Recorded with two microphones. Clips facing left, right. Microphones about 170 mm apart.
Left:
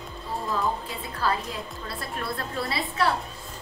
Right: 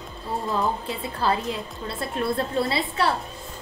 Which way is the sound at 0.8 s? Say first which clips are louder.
Right 3 dB; 25° right (ahead or behind).